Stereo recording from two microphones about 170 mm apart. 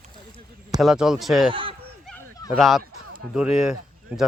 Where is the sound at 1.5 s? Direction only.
30° right (ahead or behind).